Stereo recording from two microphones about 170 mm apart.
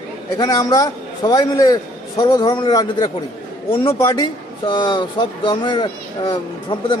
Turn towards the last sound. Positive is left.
turn(degrees=30)  # may be behind; listen again after turning